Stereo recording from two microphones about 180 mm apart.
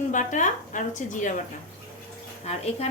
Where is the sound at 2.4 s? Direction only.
35° left (ahead or behind).